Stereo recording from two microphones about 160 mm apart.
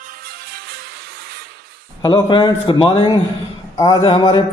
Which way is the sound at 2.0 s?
25° left (ahead or behind).